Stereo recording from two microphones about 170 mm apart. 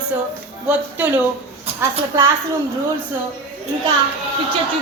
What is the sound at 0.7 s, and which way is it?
Speech, 10° right (ahead or behind).